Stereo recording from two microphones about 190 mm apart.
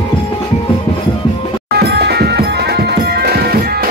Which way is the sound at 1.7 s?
60° right (ahead or behind).